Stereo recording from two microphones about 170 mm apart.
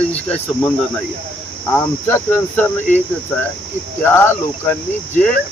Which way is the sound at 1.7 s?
15° left (ahead or behind).